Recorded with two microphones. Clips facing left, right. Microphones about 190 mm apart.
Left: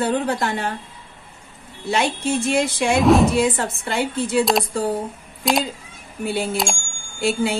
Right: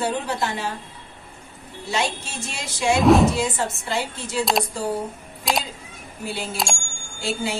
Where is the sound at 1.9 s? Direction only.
55° left (ahead or behind).